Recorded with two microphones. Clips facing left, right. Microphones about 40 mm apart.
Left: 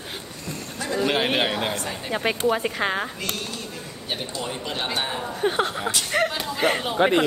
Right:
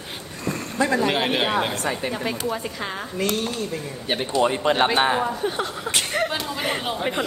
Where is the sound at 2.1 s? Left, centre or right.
Left.